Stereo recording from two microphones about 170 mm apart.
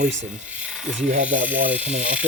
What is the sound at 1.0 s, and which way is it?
Speech, 50° right (ahead or behind).